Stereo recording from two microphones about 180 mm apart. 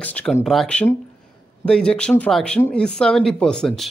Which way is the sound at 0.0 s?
5° left (ahead or behind).